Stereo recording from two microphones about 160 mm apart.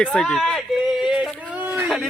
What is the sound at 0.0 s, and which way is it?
Speech, 5° left (ahead or behind).